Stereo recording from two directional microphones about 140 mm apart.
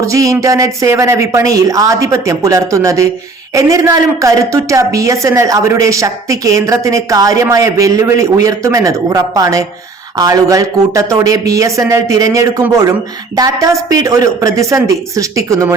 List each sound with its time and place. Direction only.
0.0 s a woman's voice: 20° right (ahead or behind)